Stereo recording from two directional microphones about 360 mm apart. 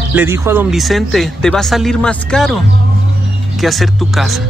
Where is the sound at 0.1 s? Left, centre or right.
Centre.